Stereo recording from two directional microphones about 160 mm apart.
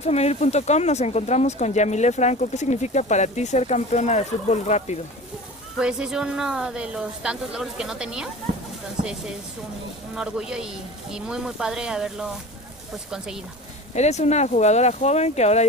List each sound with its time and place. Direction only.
0.0 s speech: 40° left (ahead or behind)
5.8 s a woman's voice: 5° right (ahead or behind)
10.1 s a woman's voice: 5° right (ahead or behind)
13.9 s speech: 45° left (ahead or behind)